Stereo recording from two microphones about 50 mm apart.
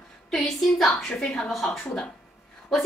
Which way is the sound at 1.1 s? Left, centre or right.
Centre.